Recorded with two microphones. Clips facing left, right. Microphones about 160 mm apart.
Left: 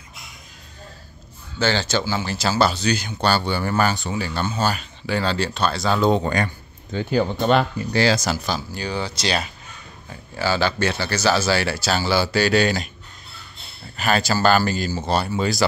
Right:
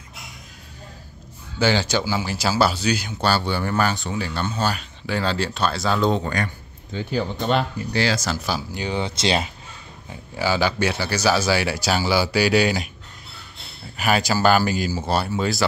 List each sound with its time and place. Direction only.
1.6 s speech: 10° right (ahead or behind); by 6.2 s 5° left (ahead or behind)
6.2 s speech: 25° left (ahead or behind)
6.9 s speech: 55° left (ahead or behind)
8.7 s speech: 20° right (ahead or behind)
10.3 s speech: 10° right (ahead or behind)
13.9 s speech: 10° right (ahead or behind)